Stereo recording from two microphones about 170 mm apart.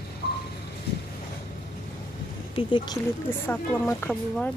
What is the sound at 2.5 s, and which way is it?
Speech, 30° left (ahead or behind).